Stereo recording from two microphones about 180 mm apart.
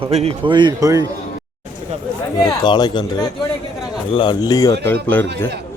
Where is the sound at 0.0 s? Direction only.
35° right (ahead or behind); by 1.0 s 20° right (ahead or behind).